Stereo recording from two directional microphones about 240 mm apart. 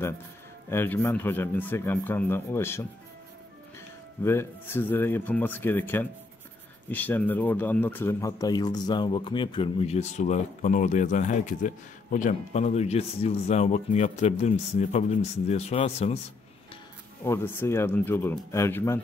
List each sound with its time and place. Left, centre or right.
0.7 s a man's voice: centre
4.2 s a man's voice: centre; by 16.2 s left
17.2 s a man's voice: centre